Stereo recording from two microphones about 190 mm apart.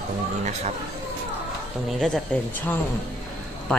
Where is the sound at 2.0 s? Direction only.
5° left (ahead or behind).